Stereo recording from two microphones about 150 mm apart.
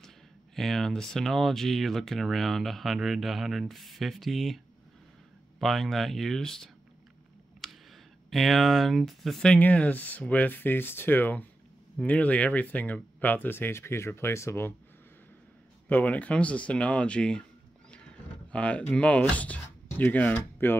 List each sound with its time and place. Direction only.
0.6 s speech: centre (ahead or behind)
5.6 s speech: centre (ahead or behind)
7.6 s a sound: centre (ahead or behind)
8.3 s speech: centre (ahead or behind); by 14.7 s 15° left (ahead or behind)
15.9 s speech: 10° left (ahead or behind)
18.5 s speech: 10° left (ahead or behind)